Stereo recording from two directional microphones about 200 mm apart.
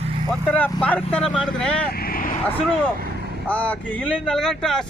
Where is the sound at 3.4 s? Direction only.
5° left (ahead or behind).